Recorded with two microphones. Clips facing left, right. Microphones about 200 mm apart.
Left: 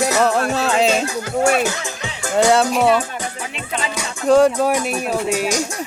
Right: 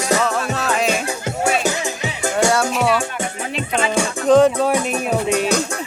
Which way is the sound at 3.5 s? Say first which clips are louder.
Right 9 dB; 35° right (ahead or behind).